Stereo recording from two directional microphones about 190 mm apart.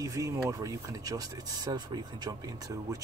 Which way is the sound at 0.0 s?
15° right (ahead or behind).